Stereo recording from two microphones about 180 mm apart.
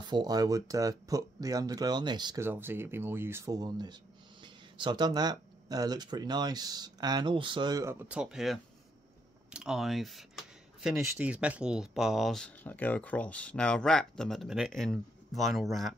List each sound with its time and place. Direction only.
0.1 s speech: 20° right (ahead or behind); by 15.9 s centre (ahead or behind)